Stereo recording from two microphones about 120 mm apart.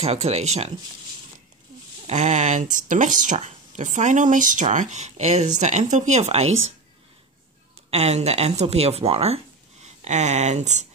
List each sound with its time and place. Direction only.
0.0 s speech: 60° right (ahead or behind)
2.0 s speech: 75° right (ahead or behind)
7.9 s speech: 65° right (ahead or behind)